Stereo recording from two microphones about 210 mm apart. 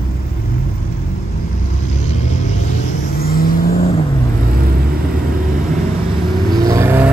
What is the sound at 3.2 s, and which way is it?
Vehicle, 45° left (ahead or behind).